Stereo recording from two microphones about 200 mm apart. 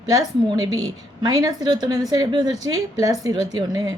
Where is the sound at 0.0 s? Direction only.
20° right (ahead or behind).